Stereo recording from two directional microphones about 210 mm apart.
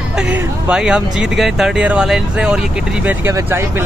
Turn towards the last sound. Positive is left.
turn(degrees=-10)  # may be behind; listen again after turning